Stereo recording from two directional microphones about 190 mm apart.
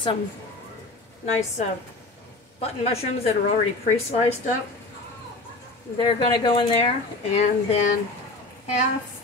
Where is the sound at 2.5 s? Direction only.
30° left (ahead or behind).